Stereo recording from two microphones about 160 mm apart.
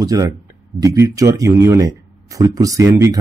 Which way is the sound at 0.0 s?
20° right (ahead or behind).